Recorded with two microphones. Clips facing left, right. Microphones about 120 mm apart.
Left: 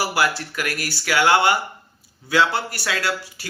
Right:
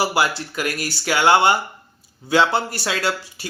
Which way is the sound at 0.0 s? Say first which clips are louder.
Right 2 dB; 20° right (ahead or behind).